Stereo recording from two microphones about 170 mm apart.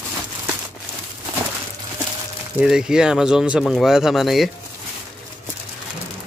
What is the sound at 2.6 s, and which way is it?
A man's voice, 5° right (ahead or behind).